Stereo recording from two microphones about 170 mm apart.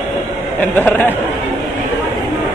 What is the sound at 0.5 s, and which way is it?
Speech, 10° left (ahead or behind).